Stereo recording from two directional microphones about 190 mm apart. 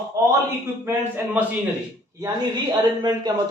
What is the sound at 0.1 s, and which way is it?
Speech, 15° right (ahead or behind).